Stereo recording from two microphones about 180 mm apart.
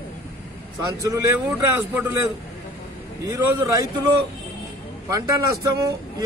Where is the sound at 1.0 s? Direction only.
15° right (ahead or behind).